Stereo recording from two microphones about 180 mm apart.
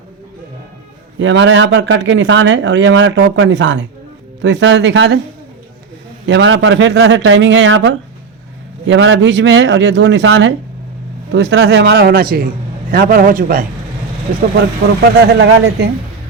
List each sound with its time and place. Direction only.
1.2 s speech: 90° right
6.2 s a man's voice: 85° right; by 13.7 s 50° right (ahead or behind)
15.0 s speech: 70° right (ahead or behind)